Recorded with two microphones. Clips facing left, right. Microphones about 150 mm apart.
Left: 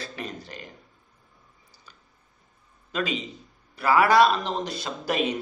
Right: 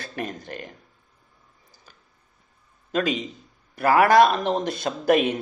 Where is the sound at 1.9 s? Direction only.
50° right (ahead or behind).